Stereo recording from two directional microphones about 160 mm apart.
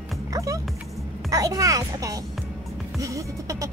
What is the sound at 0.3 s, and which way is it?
Speech, 20° right (ahead or behind).